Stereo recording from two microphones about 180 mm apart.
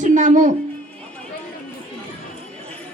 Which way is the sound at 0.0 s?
40° right (ahead or behind).